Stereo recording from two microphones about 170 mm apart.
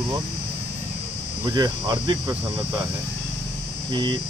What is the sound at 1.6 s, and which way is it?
Speech, 25° right (ahead or behind).